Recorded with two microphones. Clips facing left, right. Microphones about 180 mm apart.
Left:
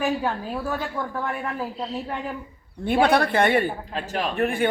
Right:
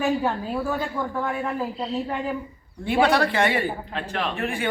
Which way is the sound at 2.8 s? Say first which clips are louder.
Left 1 dB; 55° left (ahead or behind).